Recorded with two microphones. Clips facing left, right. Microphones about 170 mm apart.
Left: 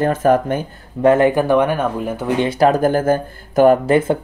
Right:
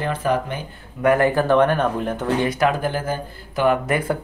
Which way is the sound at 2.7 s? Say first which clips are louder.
Left 8 dB; 45° left (ahead or behind).